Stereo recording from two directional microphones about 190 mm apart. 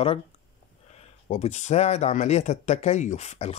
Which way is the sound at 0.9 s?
35° left (ahead or behind).